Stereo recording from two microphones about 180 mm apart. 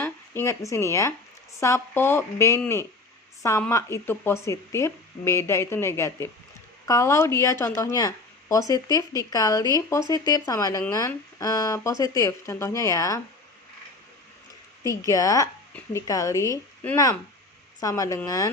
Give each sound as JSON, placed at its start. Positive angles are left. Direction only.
{"t": 0.0, "sound": "speech", "side_deg": 15}
{"t": 14.8, "sound": "speech", "side_deg": 20}